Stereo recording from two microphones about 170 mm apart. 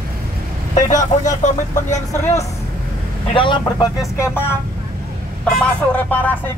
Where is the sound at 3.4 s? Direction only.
30° left (ahead or behind).